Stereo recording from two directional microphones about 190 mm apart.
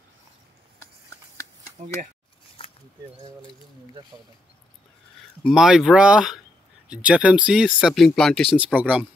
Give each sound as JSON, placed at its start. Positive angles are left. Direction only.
{"t": 1.4, "sound": "shuffling cards", "side_deg": 15}
{"t": 5.4, "sound": "speech", "side_deg": 0}